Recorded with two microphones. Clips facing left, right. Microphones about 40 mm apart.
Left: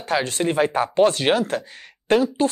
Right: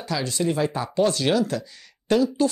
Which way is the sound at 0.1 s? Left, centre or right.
Left.